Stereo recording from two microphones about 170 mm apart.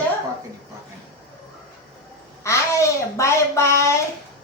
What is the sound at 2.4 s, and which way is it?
A woman's voice, 15° left (ahead or behind).